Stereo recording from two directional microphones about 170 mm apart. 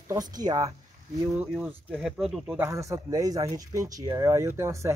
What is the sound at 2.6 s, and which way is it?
Speech, 15° right (ahead or behind).